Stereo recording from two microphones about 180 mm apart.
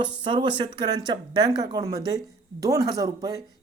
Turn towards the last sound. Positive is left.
turn(degrees=-20)  # may be behind; listen again after turning